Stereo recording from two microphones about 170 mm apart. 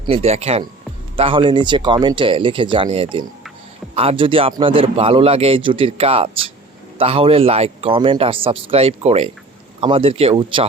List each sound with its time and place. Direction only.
0.1 s speech: 40° right (ahead or behind)